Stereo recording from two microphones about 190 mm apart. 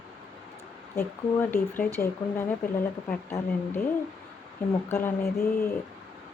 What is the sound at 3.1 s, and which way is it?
Speech, 10° left (ahead or behind).